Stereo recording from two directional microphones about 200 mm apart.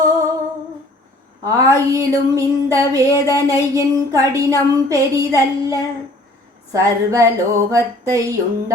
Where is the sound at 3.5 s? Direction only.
15° right (ahead or behind).